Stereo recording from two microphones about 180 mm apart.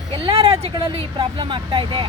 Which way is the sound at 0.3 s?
30° right (ahead or behind).